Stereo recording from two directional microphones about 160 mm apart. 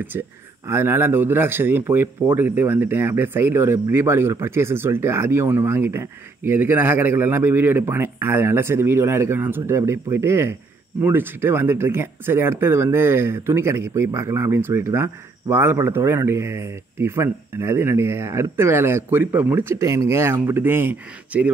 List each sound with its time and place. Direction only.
0.7 s speech: 15° right (ahead or behind)